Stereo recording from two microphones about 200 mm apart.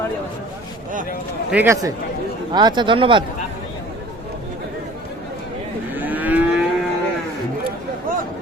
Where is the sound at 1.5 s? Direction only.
10° right (ahead or behind).